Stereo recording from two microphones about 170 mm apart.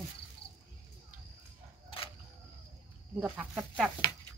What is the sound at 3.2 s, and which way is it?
Speech, 5° right (ahead or behind).